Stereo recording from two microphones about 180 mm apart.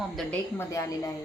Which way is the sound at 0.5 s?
15° left (ahead or behind).